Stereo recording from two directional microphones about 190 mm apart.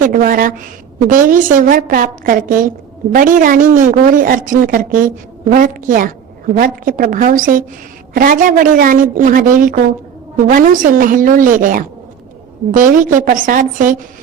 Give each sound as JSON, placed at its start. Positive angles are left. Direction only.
{"t": 0.0, "sound": "a woman's voice", "side_deg": -45}